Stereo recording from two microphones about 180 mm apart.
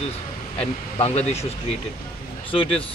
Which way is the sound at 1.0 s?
35° left (ahead or behind).